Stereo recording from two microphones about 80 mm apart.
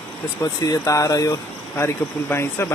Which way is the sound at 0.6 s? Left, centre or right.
Left.